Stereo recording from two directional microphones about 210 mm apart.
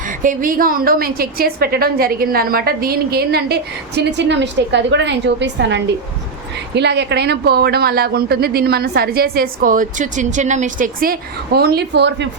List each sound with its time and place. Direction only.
0.2 s a woman's voice: 40° right (ahead or behind)